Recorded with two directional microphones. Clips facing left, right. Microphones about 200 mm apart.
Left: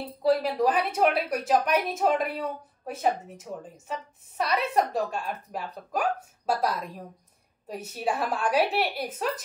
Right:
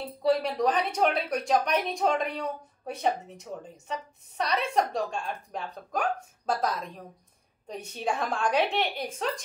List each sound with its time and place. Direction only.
0.2 s a woman's voice: 5° left (ahead or behind)